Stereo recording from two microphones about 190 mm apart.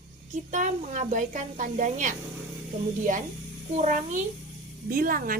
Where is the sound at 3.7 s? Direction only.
40° right (ahead or behind).